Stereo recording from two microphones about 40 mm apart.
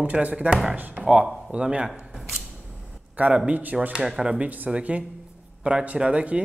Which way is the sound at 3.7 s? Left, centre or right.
Centre.